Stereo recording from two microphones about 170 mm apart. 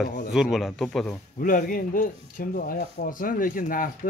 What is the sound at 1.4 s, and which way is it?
Speech, 55° left (ahead or behind).